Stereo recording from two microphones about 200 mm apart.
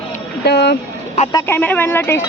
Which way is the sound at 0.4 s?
55° left (ahead or behind).